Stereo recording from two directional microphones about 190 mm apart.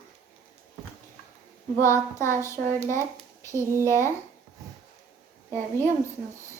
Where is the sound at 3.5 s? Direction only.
15° right (ahead or behind).